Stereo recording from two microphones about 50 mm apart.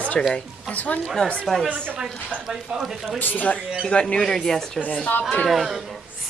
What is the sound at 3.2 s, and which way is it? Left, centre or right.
Speech, left.